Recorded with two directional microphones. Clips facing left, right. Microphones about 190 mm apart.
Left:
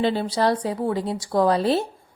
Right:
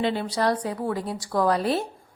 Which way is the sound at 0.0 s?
35° left (ahead or behind).